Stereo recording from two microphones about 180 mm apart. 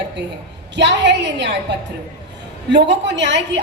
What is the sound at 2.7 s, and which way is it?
Speech, 75° right (ahead or behind).